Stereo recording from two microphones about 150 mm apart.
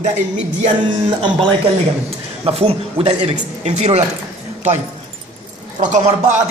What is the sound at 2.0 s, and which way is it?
Speech, 40° right (ahead or behind).